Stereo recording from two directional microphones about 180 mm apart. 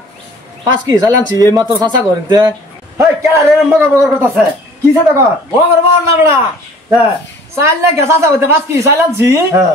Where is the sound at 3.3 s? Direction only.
10° right (ahead or behind).